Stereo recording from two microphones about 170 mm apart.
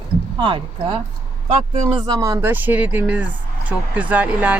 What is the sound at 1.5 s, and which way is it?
Speech, 40° right (ahead or behind).